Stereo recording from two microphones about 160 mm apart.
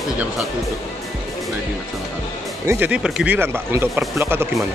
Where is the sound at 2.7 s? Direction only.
10° right (ahead or behind).